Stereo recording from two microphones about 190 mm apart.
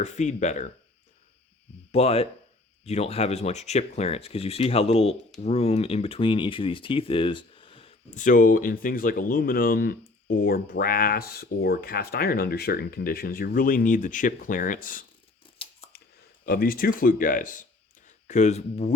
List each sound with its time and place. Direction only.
0.0 s speech: 40° left (ahead or behind)
1.9 s speech: 30° left (ahead or behind)
15.4 s a sound: 25° left (ahead or behind)
16.5 s speech: 50° left (ahead or behind)